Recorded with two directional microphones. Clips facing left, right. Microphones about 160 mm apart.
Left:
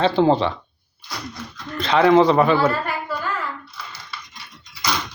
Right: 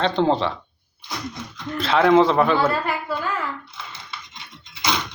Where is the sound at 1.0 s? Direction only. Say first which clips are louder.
Right 1 dB; 20° right (ahead or behind).